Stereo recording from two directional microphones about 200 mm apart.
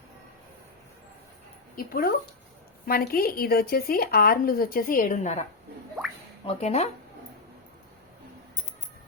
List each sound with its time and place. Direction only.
1.7 s speech: 45° left (ahead or behind)
6.4 s speech: 30° left (ahead or behind)